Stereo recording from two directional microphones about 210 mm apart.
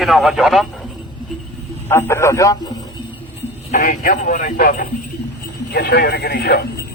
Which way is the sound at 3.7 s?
35° left (ahead or behind).